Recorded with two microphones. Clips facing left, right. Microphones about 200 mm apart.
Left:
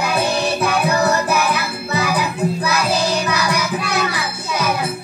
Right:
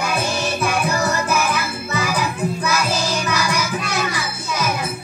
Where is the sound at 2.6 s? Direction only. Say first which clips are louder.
Left 2 dB; 60° left (ahead or behind).